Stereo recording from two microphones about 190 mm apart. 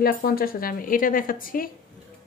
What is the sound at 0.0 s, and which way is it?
A woman's voice, 50° left (ahead or behind).